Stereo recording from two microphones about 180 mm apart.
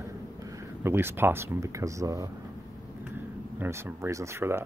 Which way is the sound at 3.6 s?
15° right (ahead or behind).